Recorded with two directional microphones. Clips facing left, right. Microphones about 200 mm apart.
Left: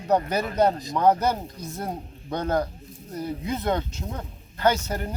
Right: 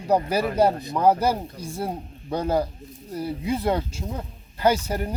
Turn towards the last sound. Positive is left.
turn(degrees=-10)  # may be behind; listen again after turning